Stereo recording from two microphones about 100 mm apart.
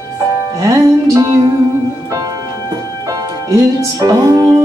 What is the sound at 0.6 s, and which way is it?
Music, 35° right (ahead or behind).